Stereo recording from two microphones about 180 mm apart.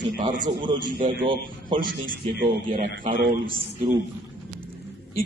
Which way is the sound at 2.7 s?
50° right (ahead or behind).